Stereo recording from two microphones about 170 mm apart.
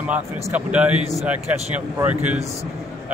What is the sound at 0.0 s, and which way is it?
A man's voice, 10° right (ahead or behind).